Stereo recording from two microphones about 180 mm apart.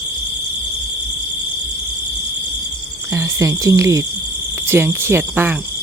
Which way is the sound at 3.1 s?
15° right (ahead or behind).